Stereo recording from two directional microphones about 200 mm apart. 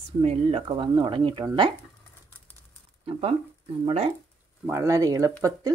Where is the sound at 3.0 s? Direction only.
30° right (ahead or behind).